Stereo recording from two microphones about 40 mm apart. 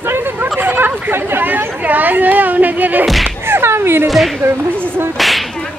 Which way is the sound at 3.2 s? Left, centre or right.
Right.